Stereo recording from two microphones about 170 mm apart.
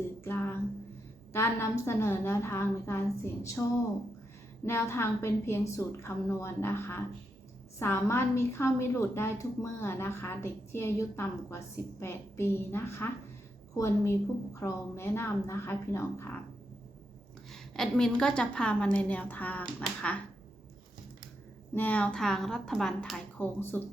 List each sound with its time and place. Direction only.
0.3 s a sound: 10° left (ahead or behind)
1.3 s a woman's voice: 15° left (ahead or behind)
17.5 s a woman's voice: 5° left (ahead or behind)
21.8 s a woman's voice: 10° left (ahead or behind)